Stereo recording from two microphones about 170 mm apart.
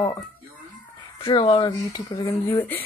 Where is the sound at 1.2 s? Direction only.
30° left (ahead or behind); by 2.8 s 10° left (ahead or behind).